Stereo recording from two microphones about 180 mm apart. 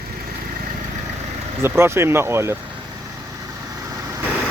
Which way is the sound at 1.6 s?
15° right (ahead or behind).